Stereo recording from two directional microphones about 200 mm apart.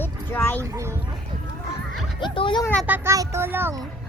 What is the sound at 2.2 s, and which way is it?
Speech, 25° left (ahead or behind).